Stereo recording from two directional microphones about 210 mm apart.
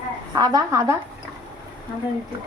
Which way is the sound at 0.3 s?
20° right (ahead or behind).